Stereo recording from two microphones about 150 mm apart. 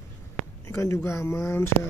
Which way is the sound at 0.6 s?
20° left (ahead or behind).